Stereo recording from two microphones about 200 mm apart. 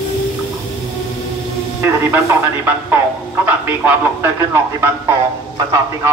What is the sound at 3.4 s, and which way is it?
Speech, 10° right (ahead or behind).